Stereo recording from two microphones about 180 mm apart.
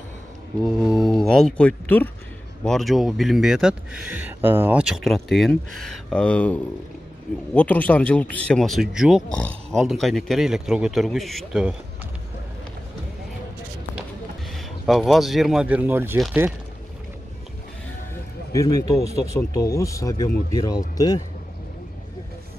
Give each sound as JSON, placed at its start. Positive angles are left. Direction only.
{"t": 0.7, "sound": "speech", "side_deg": -5}
{"t": 14.5, "sound": "speech", "side_deg": 0}
{"t": 18.5, "sound": "speech", "side_deg": 20}